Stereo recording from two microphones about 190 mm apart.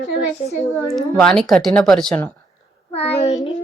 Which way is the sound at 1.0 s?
5° left (ahead or behind).